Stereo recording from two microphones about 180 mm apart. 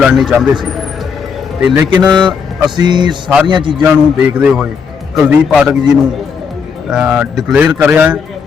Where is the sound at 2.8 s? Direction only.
25° right (ahead or behind).